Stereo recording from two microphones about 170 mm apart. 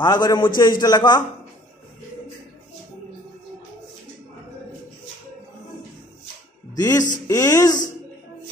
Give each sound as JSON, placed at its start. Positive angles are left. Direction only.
{"t": 0.0, "sound": "speech", "side_deg": 25}
{"t": 6.7, "sound": "speech", "side_deg": 20}